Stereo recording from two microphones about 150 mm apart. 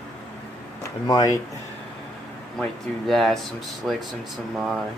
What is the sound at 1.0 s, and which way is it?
Speech, 25° left (ahead or behind).